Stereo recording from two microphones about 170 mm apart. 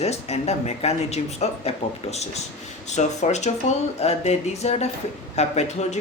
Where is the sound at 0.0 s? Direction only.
40° left (ahead or behind).